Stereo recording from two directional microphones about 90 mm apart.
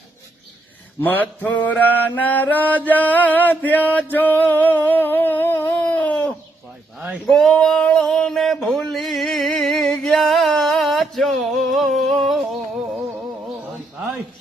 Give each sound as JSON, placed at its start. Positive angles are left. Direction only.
{"t": 1.0, "sound": "mantra", "side_deg": 20}
{"t": 7.3, "sound": "male singing", "side_deg": 5}
{"t": 7.5, "sound": "a sound", "side_deg": 10}